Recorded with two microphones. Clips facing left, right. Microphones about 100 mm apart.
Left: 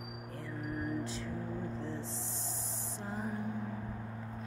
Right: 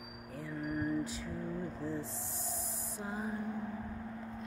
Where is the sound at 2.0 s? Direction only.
Centre (ahead or behind).